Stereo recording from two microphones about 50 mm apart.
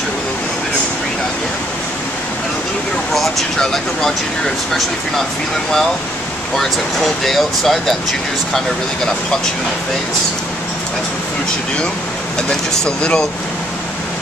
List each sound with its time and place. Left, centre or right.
3.2 s speech: centre
6.5 s speech: centre
12.4 s speech: centre